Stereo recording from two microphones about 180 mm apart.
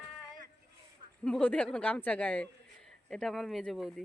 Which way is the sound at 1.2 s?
5° left (ahead or behind).